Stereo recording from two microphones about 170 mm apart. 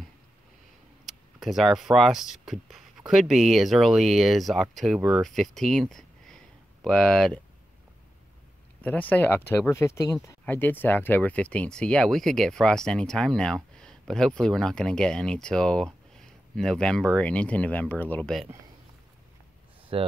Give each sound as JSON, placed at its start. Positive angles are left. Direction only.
{"t": 1.0, "sound": "speech", "side_deg": 0}
{"t": 8.8, "sound": "speech", "side_deg": 10}
{"t": 19.9, "sound": "speech", "side_deg": -35}